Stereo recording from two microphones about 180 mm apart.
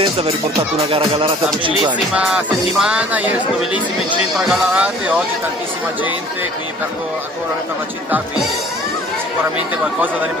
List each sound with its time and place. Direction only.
0.9 s speech: 30° right (ahead or behind)
2.1 s music: 5° right (ahead or behind)
4.5 s music: 5° right (ahead or behind)